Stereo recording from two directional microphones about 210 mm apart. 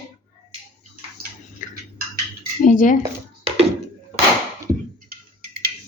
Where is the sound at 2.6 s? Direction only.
35° left (ahead or behind).